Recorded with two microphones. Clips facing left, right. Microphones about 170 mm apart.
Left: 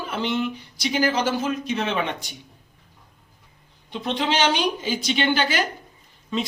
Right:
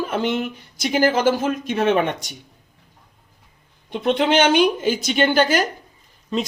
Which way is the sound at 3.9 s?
55° right (ahead or behind).